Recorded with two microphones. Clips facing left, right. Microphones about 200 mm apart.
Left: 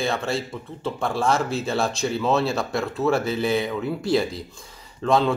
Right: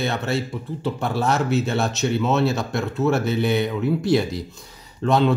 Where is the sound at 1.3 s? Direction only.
30° left (ahead or behind).